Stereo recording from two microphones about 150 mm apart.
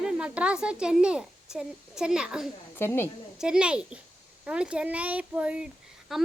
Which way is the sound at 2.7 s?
15° left (ahead or behind).